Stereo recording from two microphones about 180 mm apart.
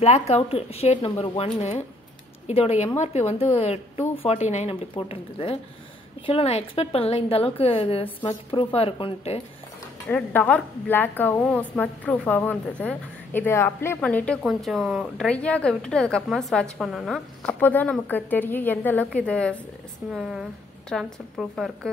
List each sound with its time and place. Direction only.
0.0 s a woman's voice: 35° left (ahead or behind)
10.0 s a woman's voice: 10° left (ahead or behind)